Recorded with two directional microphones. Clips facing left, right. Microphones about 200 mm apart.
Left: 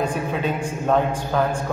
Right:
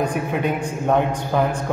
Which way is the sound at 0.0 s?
15° right (ahead or behind).